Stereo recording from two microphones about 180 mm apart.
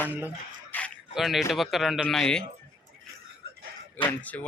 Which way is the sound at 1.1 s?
Centre (ahead or behind).